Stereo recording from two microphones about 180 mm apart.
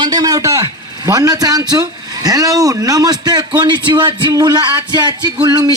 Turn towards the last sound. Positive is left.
turn(degrees=-20)  # may be behind; listen again after turning